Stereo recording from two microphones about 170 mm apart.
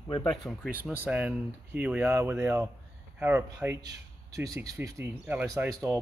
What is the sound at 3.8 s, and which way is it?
A man's voice, 20° right (ahead or behind).